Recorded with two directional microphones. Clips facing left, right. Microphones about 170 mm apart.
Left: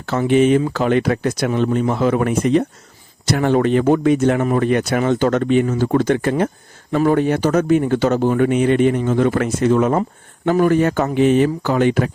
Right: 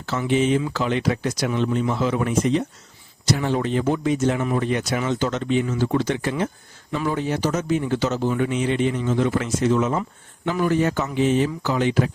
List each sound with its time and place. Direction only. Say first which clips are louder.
0.0 s speech: left 6 dB; 55° left (ahead or behind)